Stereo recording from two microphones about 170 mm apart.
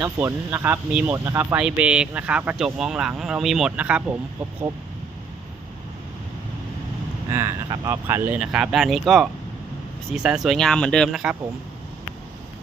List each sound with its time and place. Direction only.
0.0 s speech: 15° right (ahead or behind)
7.3 s speech: 15° right (ahead or behind)